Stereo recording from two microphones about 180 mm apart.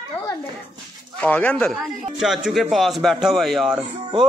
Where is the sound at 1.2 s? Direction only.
10° left (ahead or behind).